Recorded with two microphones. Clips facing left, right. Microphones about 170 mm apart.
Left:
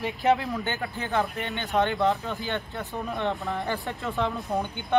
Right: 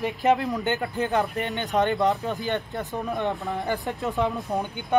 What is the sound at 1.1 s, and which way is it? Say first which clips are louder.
Speech: left 2 dB; 15° right (ahead or behind).